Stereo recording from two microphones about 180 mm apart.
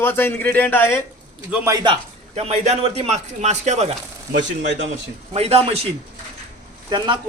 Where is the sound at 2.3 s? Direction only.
40° right (ahead or behind).